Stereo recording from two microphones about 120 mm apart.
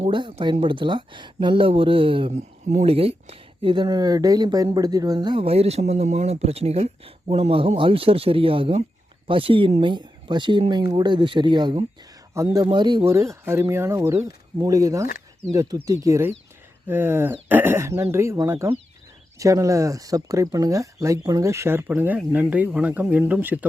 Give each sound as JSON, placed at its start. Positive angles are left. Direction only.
{"t": 0.0, "sound": "speech", "side_deg": -45}
{"t": 2.3, "sound": "speech", "side_deg": -75}
{"t": 2.8, "sound": "speech", "side_deg": -55}
{"t": 5.4, "sound": "speech", "side_deg": -55}
{"t": 12.3, "sound": "speech", "side_deg": -25}
{"t": 12.6, "sound": "speech", "side_deg": -40}
{"t": 13.1, "sound": "speech", "side_deg": -25}